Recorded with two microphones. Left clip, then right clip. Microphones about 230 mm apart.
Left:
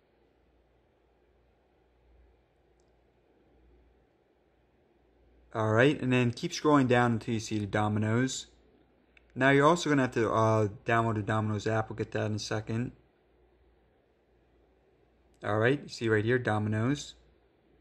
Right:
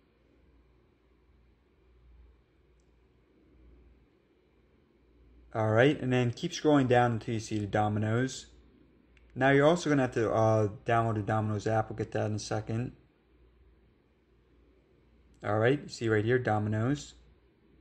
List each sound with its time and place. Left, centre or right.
5.5 s speech: centre
15.4 s speech: centre